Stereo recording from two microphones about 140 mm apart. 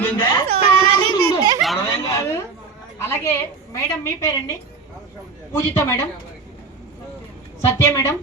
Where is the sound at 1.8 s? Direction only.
20° left (ahead or behind).